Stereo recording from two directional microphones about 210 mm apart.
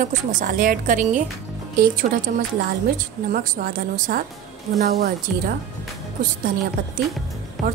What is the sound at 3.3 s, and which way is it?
Speech, 40° right (ahead or behind).